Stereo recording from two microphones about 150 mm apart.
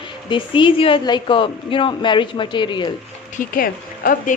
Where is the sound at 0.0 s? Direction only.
35° left (ahead or behind).